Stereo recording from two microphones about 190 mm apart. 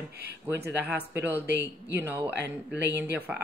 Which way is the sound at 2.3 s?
60° right (ahead or behind).